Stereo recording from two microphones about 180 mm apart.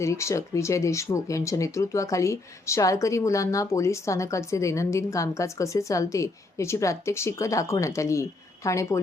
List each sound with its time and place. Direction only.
0.0 s speech: 15° left (ahead or behind)